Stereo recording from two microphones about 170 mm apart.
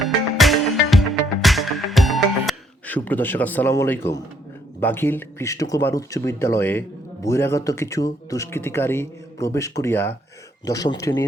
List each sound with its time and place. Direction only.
0.0 s music: centre (ahead or behind)
2.9 s speech: 10° left (ahead or behind)